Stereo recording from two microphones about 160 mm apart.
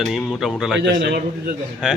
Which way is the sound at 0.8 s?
90° right.